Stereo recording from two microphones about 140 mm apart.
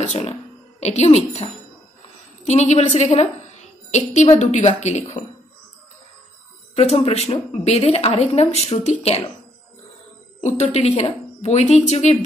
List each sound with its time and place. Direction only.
0.3 s a woman's voice: 50° left (ahead or behind)
6.7 s a woman's voice: 50° left (ahead or behind)
10.4 s a woman's voice: 50° left (ahead or behind)